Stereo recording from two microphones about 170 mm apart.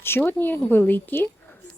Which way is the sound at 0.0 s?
15° left (ahead or behind).